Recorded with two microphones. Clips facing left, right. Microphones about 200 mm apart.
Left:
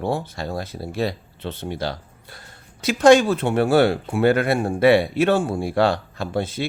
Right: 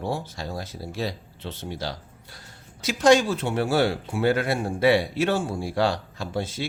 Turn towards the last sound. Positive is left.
turn(degrees=60)  # may be behind; listen again after turning